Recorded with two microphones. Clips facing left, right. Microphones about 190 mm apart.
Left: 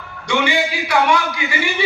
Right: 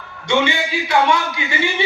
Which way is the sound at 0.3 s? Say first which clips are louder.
Right 1 dB; 25° right (ahead or behind).